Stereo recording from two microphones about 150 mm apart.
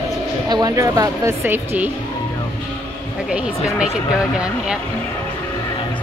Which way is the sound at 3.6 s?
5° right (ahead or behind).